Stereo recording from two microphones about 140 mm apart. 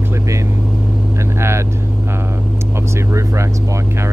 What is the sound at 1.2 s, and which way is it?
Vehicle, 20° right (ahead or behind).